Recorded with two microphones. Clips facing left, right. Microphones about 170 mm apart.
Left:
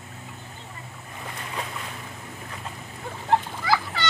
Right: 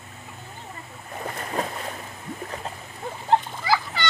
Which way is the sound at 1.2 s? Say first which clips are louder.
Right 6 dB; 45° right (ahead or behind).